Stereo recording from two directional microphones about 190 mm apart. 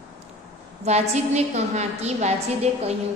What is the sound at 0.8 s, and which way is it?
A woman's voice, 35° right (ahead or behind).